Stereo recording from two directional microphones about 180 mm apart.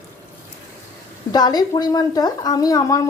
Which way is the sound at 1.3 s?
20° left (ahead or behind).